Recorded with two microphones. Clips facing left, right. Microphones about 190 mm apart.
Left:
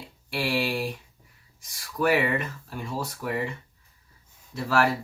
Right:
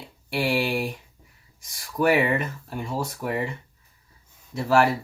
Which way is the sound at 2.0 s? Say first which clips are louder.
Right 3 dB; 20° right (ahead or behind).